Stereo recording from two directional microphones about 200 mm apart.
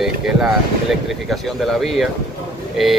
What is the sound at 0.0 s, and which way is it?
Speech, centre (ahead or behind).